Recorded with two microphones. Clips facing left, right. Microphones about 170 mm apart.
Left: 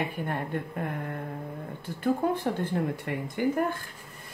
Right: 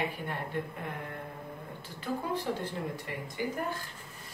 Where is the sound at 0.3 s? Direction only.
55° left (ahead or behind).